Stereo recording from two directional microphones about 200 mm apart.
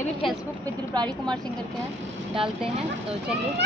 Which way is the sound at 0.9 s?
20° right (ahead or behind).